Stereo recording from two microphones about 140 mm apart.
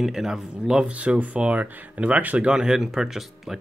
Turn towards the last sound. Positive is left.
turn(degrees=0)  # may be behind; listen again after turning